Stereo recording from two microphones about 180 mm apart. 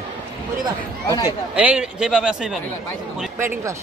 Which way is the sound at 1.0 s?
20° left (ahead or behind).